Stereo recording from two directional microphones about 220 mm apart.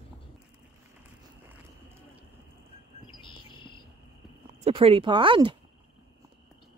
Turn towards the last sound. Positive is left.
turn(degrees=-20)  # may be behind; listen again after turning